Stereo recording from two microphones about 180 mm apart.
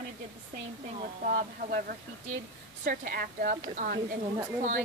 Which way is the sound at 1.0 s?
50° right (ahead or behind).